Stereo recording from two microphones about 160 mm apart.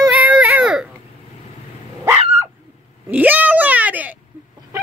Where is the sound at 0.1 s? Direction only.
10° right (ahead or behind).